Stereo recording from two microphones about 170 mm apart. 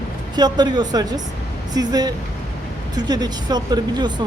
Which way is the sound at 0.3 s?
25° right (ahead or behind).